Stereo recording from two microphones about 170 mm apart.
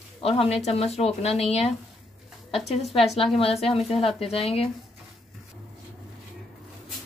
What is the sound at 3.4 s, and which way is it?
Speech, 35° left (ahead or behind).